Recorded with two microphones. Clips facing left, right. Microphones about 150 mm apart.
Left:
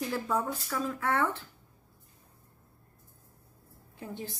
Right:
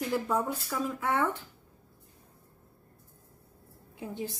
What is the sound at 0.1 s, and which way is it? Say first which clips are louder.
Speech: right 4 dB; 10° right (ahead or behind).